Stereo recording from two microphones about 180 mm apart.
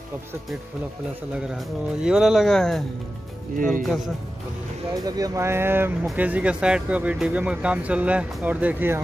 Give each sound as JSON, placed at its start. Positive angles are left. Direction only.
{"t": 1.5, "sound": "speech", "side_deg": -5}
{"t": 3.8, "sound": "speech", "side_deg": 0}
{"t": 5.0, "sound": "speech", "side_deg": -20}